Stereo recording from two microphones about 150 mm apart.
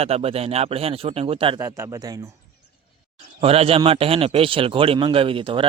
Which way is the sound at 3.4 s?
40° right (ahead or behind).